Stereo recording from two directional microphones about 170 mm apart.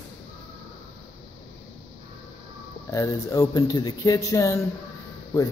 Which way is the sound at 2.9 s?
20° left (ahead or behind).